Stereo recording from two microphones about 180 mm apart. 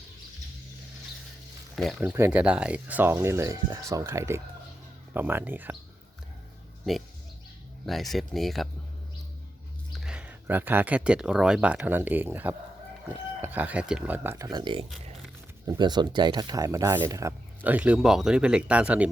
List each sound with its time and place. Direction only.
1.7 s speech: centre (ahead or behind)
2.0 s speech: 15° right (ahead or behind)
7.9 s speech: centre (ahead or behind)
9.9 s speech: 5° right (ahead or behind)